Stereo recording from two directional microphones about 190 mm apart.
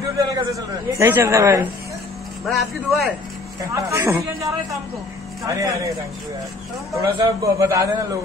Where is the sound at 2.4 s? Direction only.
Centre (ahead or behind).